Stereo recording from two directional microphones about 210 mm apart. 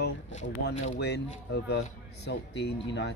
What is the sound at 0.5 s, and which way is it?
Speech, 65° left (ahead or behind).